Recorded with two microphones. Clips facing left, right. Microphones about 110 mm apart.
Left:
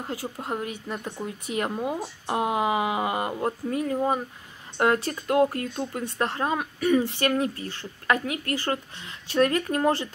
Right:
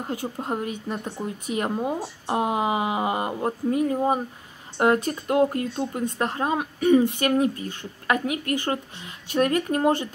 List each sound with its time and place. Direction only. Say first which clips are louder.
0.0 s speech: right 3 dB; 20° right (ahead or behind)